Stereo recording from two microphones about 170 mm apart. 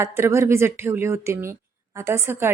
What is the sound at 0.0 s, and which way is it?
Speech, 15° right (ahead or behind).